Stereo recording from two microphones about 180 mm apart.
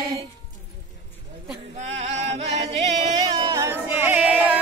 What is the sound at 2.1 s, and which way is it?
Singing, 40° right (ahead or behind).